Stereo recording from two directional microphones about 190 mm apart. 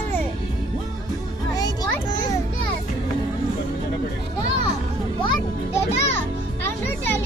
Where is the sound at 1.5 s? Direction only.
20° left (ahead or behind).